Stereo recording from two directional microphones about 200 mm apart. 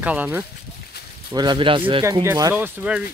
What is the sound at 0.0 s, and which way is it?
Speech, 5° right (ahead or behind).